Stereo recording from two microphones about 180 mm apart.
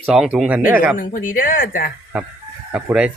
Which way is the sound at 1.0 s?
45° left (ahead or behind).